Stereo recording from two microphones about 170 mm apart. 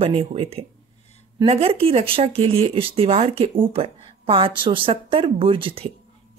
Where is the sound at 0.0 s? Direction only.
35° right (ahead or behind).